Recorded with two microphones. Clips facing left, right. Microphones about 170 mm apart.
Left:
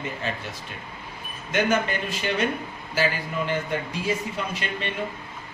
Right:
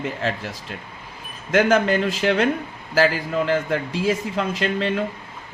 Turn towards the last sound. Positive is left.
turn(degrees=-90)